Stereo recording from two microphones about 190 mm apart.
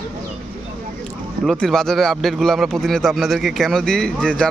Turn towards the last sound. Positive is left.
turn(degrees=5)  # may be behind; listen again after turning